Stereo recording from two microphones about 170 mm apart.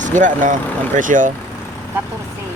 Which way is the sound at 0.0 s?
45° right (ahead or behind).